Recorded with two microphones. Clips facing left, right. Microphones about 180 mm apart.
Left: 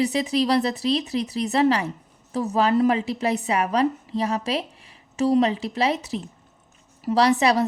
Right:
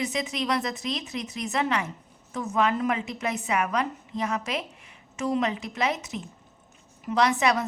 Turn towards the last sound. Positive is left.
turn(degrees=35)  # may be behind; listen again after turning